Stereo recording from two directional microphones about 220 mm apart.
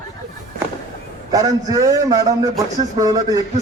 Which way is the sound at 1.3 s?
15° right (ahead or behind).